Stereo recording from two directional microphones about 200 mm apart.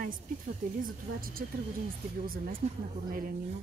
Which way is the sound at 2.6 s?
35° right (ahead or behind).